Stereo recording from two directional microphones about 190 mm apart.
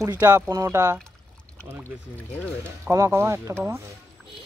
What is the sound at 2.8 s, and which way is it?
Speech, 15° right (ahead or behind).